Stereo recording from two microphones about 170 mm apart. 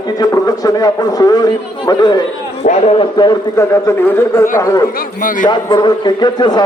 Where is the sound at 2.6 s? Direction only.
45° left (ahead or behind).